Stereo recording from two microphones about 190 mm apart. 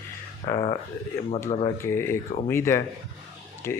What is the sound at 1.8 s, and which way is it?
Speech, 15° left (ahead or behind).